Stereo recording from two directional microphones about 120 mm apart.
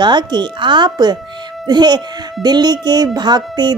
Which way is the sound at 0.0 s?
40° right (ahead or behind).